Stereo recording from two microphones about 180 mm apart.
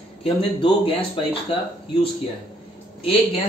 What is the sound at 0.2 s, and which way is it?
A man's voice, 30° left (ahead or behind).